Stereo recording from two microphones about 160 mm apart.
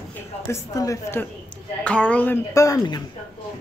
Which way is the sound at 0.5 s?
20° left (ahead or behind).